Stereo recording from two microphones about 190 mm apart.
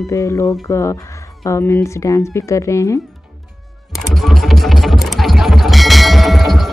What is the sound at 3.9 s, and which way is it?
Music, centre (ahead or behind).